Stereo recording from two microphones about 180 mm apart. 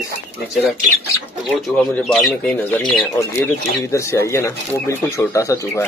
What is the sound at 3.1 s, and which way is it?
Speech, 15° left (ahead or behind).